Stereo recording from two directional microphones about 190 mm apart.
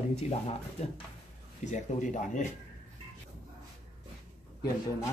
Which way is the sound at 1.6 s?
40° left (ahead or behind).